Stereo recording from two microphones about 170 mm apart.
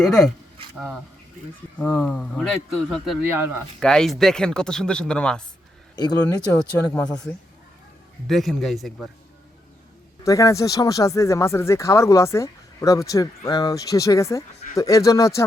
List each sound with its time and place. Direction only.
0.0 s speech: 5° left (ahead or behind)
1.8 s speech: 5° left (ahead or behind)
3.2 s speech: 15° right (ahead or behind)
3.8 s speech: 5° left (ahead or behind)
6.0 s speech: 20° left (ahead or behind)
6.9 s speech: 5° left (ahead or behind)
10.2 s speech: 20° left (ahead or behind)